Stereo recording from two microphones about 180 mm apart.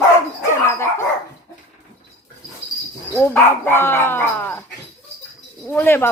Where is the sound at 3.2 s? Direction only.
10° left (ahead or behind).